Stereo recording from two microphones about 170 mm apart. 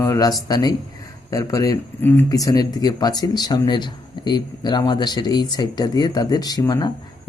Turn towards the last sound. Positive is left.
turn(degrees=20)  # may be behind; listen again after turning